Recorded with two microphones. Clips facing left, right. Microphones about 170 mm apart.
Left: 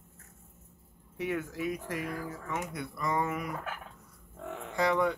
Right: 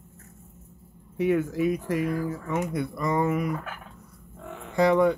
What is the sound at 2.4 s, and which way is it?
Speech, 35° right (ahead or behind).